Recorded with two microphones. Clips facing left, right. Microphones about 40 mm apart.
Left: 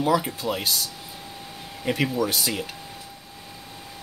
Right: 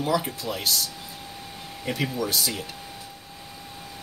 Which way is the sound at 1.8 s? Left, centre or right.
Left.